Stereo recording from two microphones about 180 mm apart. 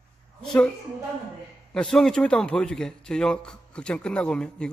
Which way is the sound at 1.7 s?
5° left (ahead or behind).